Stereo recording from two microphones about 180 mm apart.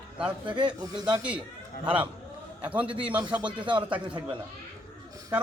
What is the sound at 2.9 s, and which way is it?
Speech, 30° right (ahead or behind).